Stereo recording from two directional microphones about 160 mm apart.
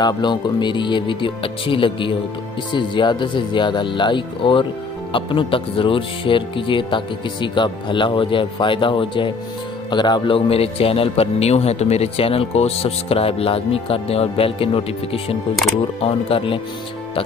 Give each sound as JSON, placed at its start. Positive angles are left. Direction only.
{"t": 0.0, "sound": "a man's voice", "side_deg": 30}